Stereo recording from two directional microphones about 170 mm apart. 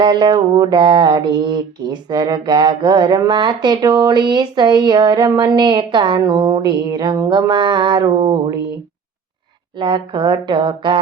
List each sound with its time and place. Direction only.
0.0 s mantra: 25° right (ahead or behind)
9.7 s mantra: 25° right (ahead or behind)